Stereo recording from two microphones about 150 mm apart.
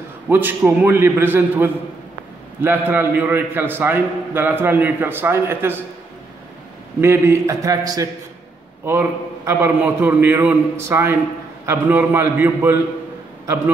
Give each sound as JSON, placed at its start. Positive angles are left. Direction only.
{"t": 0.3, "sound": "a man's voice", "side_deg": -15}
{"t": 7.0, "sound": "a man's voice", "side_deg": -15}